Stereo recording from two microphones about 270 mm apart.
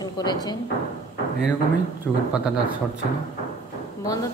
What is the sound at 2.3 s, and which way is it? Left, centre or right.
Speech, centre.